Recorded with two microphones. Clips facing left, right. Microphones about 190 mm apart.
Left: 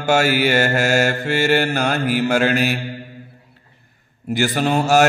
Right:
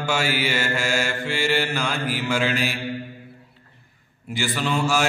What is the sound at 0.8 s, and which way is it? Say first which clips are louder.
Mantra: left 7 dB; 65° left (ahead or behind).